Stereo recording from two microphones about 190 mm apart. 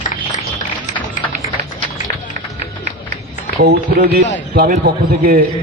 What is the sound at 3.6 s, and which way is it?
A man's voice, 55° right (ahead or behind).